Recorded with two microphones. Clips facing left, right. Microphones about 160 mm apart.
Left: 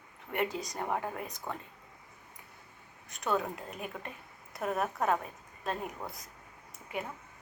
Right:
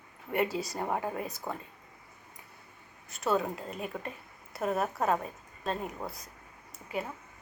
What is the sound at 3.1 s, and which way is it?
A woman's voice, 5° right (ahead or behind).